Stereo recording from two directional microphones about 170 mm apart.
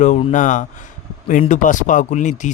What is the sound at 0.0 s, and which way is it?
Speech, 45° left (ahead or behind).